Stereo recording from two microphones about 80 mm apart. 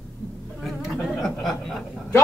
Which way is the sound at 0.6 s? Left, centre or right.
Centre.